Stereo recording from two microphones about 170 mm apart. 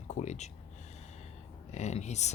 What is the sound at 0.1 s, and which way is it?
Speech, 45° left (ahead or behind).